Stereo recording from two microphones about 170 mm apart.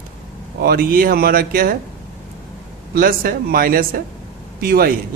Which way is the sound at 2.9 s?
60° right (ahead or behind).